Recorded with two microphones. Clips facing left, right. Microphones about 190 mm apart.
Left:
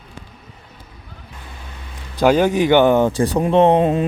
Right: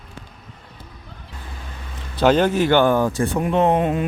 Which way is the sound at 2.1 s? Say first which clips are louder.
Left 2 dB; 10° left (ahead or behind).